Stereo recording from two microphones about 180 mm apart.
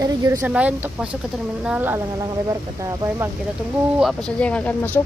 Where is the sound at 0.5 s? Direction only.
5° right (ahead or behind).